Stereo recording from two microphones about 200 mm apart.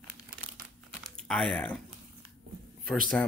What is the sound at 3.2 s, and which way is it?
Speech, 5° left (ahead or behind).